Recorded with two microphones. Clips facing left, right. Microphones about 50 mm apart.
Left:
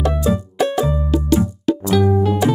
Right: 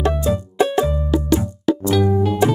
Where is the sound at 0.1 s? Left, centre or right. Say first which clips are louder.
Left 1 dB; centre.